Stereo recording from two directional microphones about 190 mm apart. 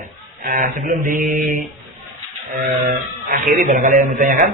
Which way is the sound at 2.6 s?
45° right (ahead or behind).